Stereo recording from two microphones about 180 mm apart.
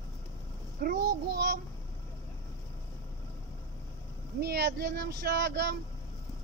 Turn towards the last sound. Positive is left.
turn(degrees=-65)  # may be behind; listen again after turning